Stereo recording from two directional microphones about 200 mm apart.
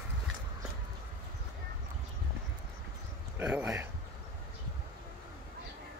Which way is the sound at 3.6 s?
15° right (ahead or behind).